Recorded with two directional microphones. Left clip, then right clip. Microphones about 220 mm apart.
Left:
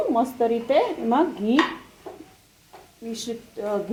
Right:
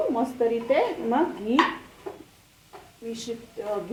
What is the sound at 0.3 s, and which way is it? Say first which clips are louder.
A woman's voice: even; 45° left (ahead or behind).